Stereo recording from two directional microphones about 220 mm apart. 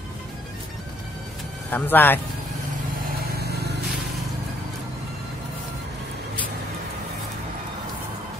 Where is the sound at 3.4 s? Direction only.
50° right (ahead or behind).